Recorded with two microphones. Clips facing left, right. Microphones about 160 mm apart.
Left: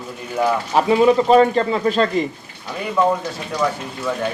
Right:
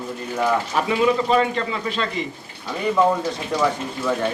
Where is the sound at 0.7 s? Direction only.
35° left (ahead or behind).